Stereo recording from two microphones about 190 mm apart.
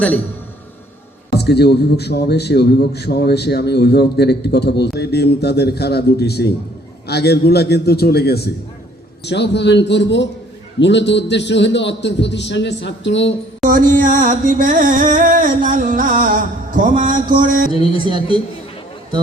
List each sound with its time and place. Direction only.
1.3 s a man's voice: 60° left (ahead or behind)
13.7 s music: 45° right (ahead or behind)